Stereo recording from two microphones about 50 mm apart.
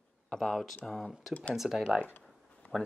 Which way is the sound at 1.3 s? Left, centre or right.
Left.